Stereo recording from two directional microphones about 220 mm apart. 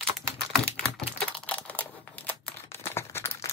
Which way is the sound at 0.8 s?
5° left (ahead or behind).